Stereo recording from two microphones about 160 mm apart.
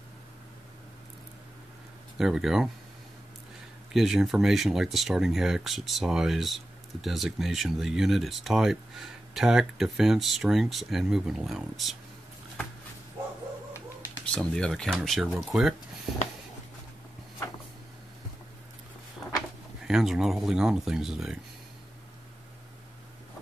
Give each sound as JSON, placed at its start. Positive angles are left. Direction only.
{"t": 2.1, "sound": "speech", "side_deg": -5}
{"t": 3.9, "sound": "speech", "side_deg": 0}
{"t": 14.3, "sound": "speech", "side_deg": 5}
{"t": 19.8, "sound": "speech", "side_deg": -5}